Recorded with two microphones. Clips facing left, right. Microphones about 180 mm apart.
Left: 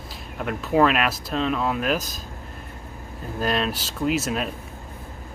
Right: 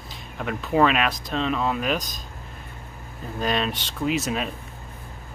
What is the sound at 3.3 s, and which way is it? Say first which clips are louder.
Speech: left 1 dB; centre (ahead or behind).